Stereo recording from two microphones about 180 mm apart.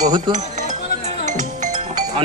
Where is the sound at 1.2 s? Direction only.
40° right (ahead or behind).